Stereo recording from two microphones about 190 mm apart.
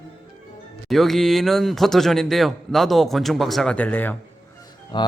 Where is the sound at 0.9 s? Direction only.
Centre (ahead or behind).